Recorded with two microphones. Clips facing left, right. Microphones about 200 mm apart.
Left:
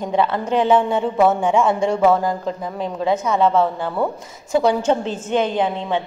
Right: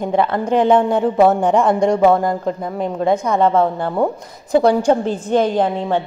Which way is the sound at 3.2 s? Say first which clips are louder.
Even; 55° right (ahead or behind).